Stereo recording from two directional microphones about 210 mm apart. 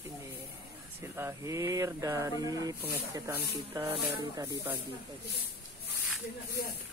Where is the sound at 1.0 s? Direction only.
10° right (ahead or behind).